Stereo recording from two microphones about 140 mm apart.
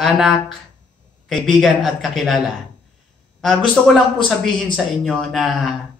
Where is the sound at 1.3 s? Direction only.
Centre (ahead or behind).